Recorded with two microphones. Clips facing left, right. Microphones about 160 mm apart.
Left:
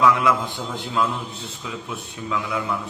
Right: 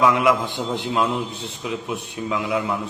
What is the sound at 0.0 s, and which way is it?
A man's voice, 20° right (ahead or behind).